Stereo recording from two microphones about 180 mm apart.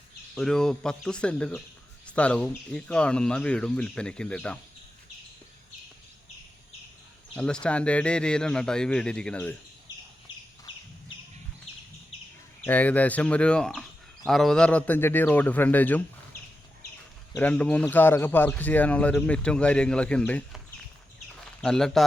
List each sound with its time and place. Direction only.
0.3 s speech: 5° left (ahead or behind)
7.3 s speech: 5° left (ahead or behind)
12.6 s speech: 10° left (ahead or behind)
17.3 s speech: 10° left (ahead or behind)
21.6 s speech: 5° left (ahead or behind)